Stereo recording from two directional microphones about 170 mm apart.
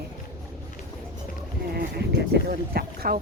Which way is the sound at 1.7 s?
70° right (ahead or behind).